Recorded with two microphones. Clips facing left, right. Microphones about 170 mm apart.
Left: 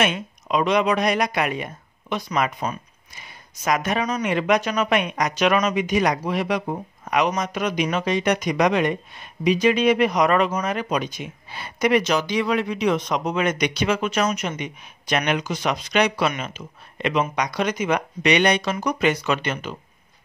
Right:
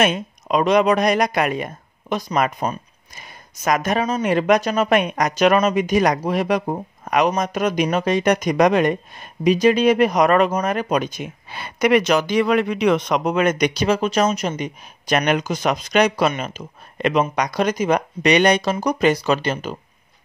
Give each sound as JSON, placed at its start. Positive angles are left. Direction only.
{"t": 0.0, "sound": "speech", "side_deg": -45}
{"t": 2.6, "sound": "a sound", "side_deg": -40}
{"t": 4.2, "sound": "speech", "side_deg": -40}